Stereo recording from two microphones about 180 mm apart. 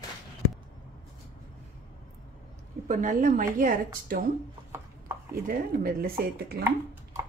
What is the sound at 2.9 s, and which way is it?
A woman's voice, 45° right (ahead or behind).